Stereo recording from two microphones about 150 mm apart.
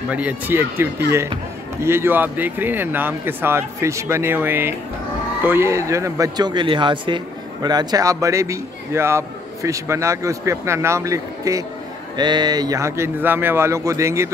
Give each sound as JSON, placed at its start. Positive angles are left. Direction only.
{"t": 0.1, "sound": "a man's voice", "side_deg": -10}